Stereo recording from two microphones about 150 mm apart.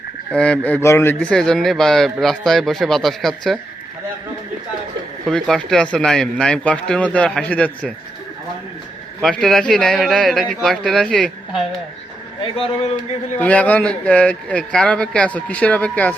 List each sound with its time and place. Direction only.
0.3 s speech: 5° left (ahead or behind)
1.2 s speech: 5° left (ahead or behind)
5.2 s speech: 5° left (ahead or behind)
9.2 s speech: centre (ahead or behind)
12.4 s speech: 40° left (ahead or behind)
13.3 s speech: 10° left (ahead or behind)